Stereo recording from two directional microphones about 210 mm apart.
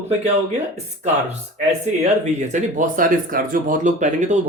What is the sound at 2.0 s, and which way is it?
Speech, 35° right (ahead or behind).